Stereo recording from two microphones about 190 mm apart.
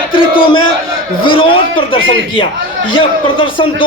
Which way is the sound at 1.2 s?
25° left (ahead or behind).